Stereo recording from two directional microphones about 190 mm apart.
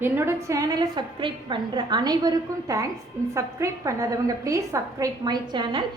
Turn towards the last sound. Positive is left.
turn(degrees=-25)  # may be behind; listen again after turning